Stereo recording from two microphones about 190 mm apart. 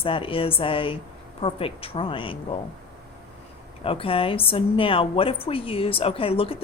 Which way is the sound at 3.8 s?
30° left (ahead or behind).